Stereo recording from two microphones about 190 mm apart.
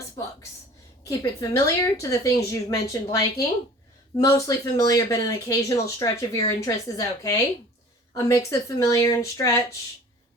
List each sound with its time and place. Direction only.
1.0 s speech: 20° left (ahead or behind)